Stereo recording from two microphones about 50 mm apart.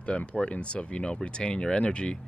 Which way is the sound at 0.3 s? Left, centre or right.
Left.